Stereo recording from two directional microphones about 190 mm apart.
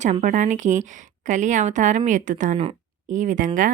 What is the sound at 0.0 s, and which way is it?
Speech, 40° right (ahead or behind).